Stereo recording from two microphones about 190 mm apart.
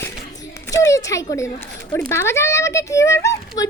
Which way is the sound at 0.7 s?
15° left (ahead or behind).